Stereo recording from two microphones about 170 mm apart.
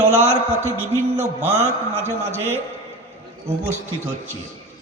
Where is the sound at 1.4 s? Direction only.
40° right (ahead or behind).